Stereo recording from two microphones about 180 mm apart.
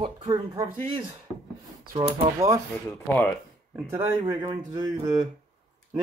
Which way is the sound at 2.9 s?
5° left (ahead or behind).